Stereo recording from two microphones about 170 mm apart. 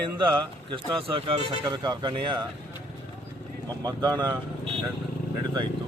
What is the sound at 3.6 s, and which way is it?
Speech, 25° right (ahead or behind).